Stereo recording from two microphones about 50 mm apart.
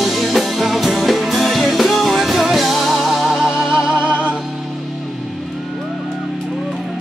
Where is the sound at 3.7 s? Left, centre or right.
Centre.